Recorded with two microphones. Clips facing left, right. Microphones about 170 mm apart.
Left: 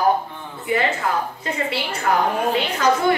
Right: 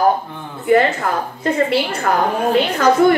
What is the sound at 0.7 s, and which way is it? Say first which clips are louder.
A woman's voice: right 7 dB; 50° right (ahead or behind).